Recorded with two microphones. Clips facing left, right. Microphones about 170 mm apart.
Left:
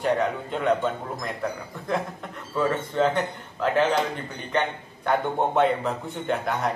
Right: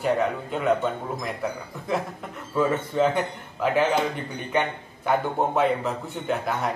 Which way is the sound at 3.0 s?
5° right (ahead or behind).